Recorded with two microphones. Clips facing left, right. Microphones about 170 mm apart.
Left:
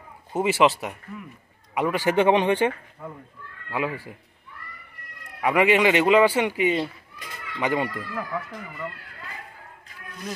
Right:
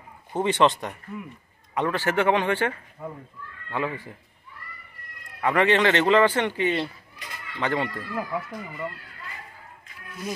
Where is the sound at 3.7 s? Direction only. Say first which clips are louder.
Left 1 dB; 10° left (ahead or behind).